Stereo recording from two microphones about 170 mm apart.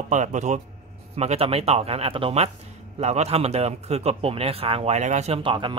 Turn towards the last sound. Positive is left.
turn(degrees=-30)  # may be behind; listen again after turning